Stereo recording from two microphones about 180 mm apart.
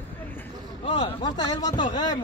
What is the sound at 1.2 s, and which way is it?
Speech, 20° left (ahead or behind).